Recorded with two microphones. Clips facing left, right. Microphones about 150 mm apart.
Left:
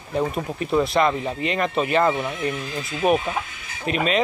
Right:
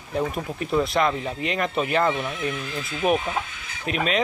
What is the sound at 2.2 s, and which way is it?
Chicken, 15° left (ahead or behind).